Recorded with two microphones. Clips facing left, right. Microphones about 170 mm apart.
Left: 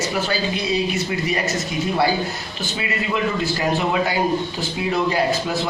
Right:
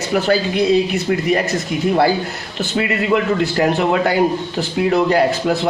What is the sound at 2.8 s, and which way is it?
A man's voice, 60° right (ahead or behind).